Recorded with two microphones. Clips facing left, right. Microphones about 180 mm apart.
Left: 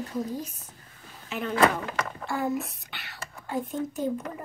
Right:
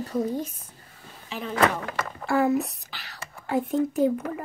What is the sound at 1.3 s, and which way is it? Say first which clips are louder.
Speech: left 2 dB; centre (ahead or behind).